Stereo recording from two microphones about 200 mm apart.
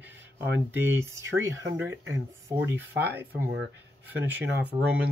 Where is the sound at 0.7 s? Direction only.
15° right (ahead or behind).